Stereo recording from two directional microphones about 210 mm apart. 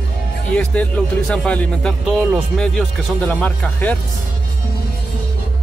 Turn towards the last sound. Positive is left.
turn(degrees=5)  # may be behind; listen again after turning